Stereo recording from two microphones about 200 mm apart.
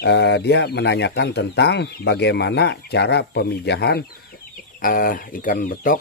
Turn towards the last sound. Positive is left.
turn(degrees=45)  # may be behind; listen again after turning